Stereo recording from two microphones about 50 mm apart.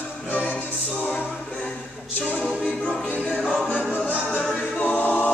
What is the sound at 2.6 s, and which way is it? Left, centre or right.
Music, centre.